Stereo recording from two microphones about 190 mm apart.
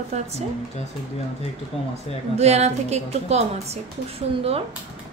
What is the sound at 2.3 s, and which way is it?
A woman's voice, 35° right (ahead or behind).